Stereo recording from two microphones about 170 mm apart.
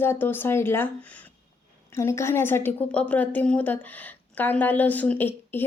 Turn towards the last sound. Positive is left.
turn(degrees=10)  # may be behind; listen again after turning